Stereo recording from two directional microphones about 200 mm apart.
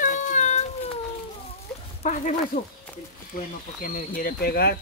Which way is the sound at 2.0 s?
35° left (ahead or behind).